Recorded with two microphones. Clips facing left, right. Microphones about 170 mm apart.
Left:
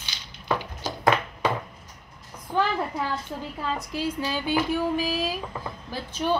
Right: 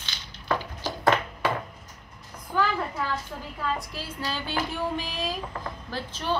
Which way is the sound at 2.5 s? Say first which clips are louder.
Left 1 dB; 25° left (ahead or behind).